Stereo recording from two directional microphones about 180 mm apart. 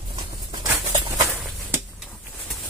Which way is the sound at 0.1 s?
25° right (ahead or behind).